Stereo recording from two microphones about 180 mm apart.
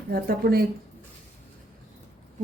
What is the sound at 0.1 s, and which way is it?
Speech, 55° right (ahead or behind).